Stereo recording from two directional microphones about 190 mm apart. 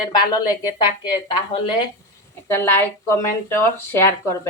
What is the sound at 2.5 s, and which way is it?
Speech, 10° left (ahead or behind).